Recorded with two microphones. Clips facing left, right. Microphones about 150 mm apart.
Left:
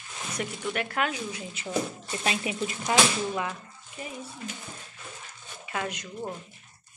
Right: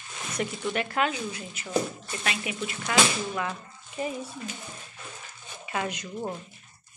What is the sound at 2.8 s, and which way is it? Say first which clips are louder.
Speech: even; 15° left (ahead or behind).